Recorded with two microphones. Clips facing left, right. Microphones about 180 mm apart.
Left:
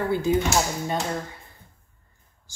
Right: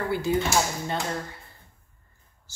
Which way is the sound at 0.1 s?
20° left (ahead or behind).